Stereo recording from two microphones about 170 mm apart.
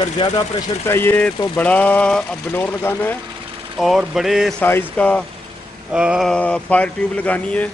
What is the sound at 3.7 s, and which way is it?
Speech, centre (ahead or behind).